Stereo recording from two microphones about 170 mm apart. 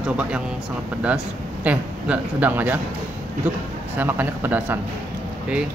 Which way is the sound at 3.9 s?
10° right (ahead or behind).